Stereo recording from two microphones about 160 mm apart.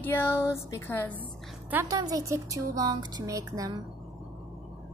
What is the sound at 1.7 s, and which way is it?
A woman's voice, 20° right (ahead or behind).